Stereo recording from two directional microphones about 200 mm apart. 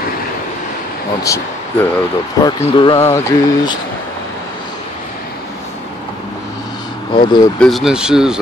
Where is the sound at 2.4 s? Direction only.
20° left (ahead or behind).